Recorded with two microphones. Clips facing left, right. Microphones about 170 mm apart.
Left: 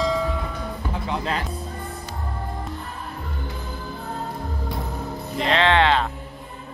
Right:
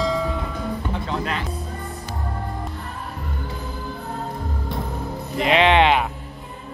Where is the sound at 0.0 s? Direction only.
Centre (ahead or behind).